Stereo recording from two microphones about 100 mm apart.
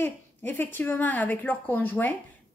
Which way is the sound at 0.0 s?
20° left (ahead or behind).